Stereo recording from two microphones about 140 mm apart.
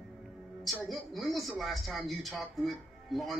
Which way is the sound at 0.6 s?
Centre (ahead or behind).